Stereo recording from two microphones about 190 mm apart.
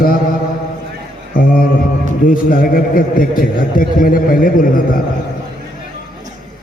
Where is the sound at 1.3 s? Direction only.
50° left (ahead or behind).